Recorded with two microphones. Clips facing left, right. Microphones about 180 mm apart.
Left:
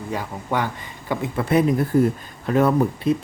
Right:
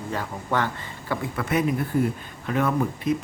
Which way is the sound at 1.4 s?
30° left (ahead or behind).